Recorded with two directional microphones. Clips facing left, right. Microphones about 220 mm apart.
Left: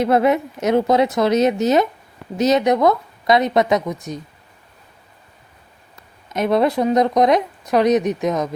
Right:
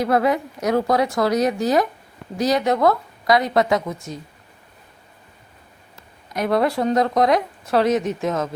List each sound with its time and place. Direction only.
0.0 s speech: 25° left (ahead or behind)
6.2 s speech: 20° left (ahead or behind)